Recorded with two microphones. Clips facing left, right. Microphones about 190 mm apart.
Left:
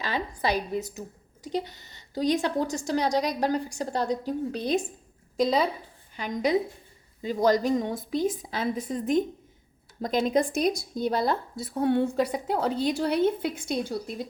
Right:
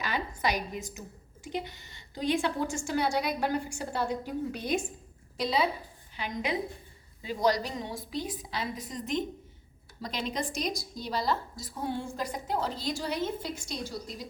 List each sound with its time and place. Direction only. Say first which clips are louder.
1.5 s a woman's voice: left 5 dB; 40° left (ahead or behind); by 14.3 s 55° left (ahead or behind)